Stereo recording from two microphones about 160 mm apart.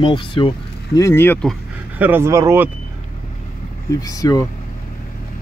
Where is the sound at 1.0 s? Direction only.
15° left (ahead or behind).